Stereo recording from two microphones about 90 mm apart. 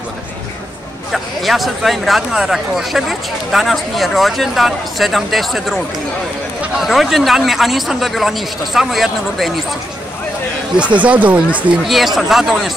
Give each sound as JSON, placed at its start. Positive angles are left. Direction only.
{"t": 1.1, "sound": "speech", "side_deg": 0}
{"t": 6.8, "sound": "speech", "side_deg": 0}
{"t": 11.0, "sound": "speech", "side_deg": -15}
{"t": 11.8, "sound": "speech", "side_deg": 0}